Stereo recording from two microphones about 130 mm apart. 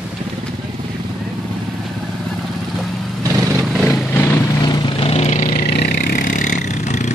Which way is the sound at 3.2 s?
25° right (ahead or behind).